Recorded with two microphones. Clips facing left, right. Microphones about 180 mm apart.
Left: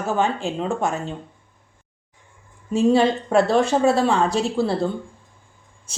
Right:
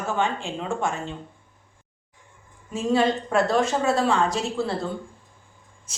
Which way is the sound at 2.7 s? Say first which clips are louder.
Left 5 dB; 30° left (ahead or behind).